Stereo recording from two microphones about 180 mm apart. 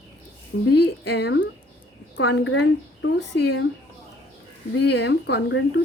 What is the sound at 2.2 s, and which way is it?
A woman's voice, 90° left.